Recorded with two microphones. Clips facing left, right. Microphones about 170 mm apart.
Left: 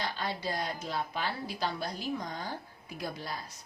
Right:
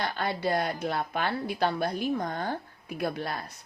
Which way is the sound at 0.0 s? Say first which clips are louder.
Right 6 dB; 60° right (ahead or behind).